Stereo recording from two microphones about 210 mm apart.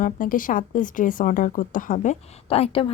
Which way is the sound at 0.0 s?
40° left (ahead or behind).